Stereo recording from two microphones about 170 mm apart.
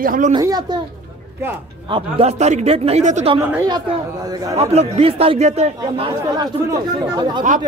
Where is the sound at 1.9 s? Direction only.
35° right (ahead or behind).